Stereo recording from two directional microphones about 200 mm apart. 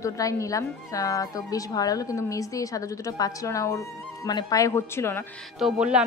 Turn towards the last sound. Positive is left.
turn(degrees=-5)  # may be behind; listen again after turning